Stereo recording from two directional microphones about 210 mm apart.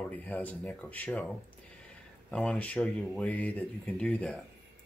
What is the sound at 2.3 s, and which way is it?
Speech, 5° left (ahead or behind).